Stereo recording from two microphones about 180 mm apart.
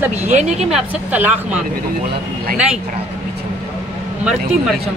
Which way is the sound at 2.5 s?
5° right (ahead or behind).